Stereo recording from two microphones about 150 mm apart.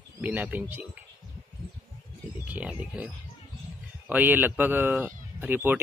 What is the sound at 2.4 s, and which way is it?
A man's voice, 10° right (ahead or behind).